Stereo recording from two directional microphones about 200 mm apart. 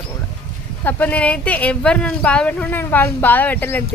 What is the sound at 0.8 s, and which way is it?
A woman's voice, 10° left (ahead or behind).